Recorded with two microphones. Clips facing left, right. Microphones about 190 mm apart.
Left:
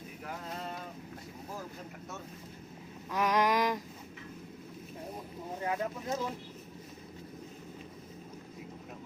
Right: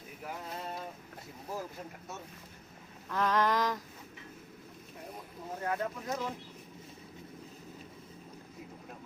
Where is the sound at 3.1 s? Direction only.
15° left (ahead or behind).